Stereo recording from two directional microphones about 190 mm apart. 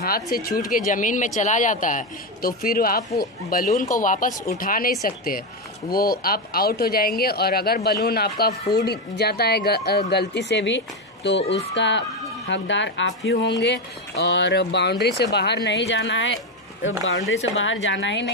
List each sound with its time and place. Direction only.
0.0 s speech: 50° left (ahead or behind); by 18.2 s 75° left (ahead or behind)